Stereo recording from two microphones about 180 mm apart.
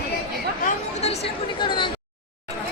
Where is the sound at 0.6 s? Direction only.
40° left (ahead or behind).